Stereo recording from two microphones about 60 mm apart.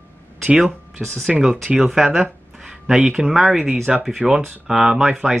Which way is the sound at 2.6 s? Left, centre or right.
Centre.